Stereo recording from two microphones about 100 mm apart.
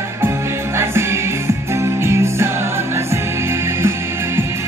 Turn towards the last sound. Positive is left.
turn(degrees=-25)  # may be behind; listen again after turning